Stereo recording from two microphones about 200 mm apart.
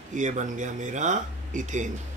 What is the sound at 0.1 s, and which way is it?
Speech, 35° right (ahead or behind).